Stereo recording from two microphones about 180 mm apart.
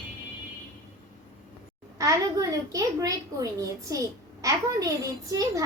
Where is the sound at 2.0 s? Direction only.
20° right (ahead or behind).